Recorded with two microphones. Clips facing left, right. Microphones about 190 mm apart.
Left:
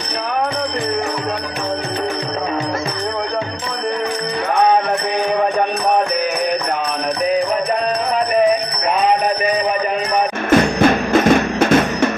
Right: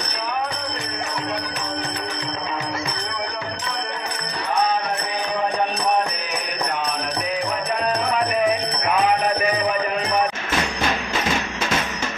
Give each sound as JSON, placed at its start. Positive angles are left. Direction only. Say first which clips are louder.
{"t": 10.5, "sound": "music", "louder": "left 11 dB", "side_deg": 55}